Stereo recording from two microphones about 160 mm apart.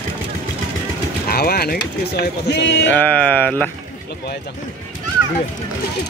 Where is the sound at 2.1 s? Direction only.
90° left.